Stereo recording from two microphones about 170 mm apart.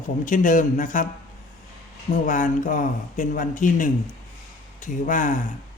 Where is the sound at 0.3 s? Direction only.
50° left (ahead or behind).